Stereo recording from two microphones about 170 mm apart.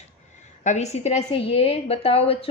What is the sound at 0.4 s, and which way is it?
A woman's voice, 40° left (ahead or behind).